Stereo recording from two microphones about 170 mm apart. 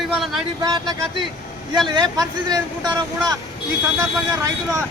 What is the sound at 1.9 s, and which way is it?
Speech, 25° right (ahead or behind).